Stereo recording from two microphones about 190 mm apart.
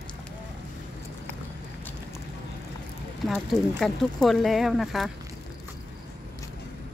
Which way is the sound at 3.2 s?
Centre (ahead or behind).